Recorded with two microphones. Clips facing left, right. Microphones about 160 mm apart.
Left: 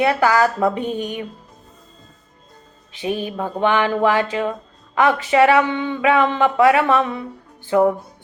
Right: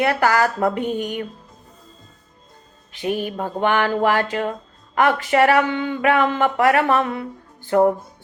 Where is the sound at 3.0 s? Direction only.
15° left (ahead or behind).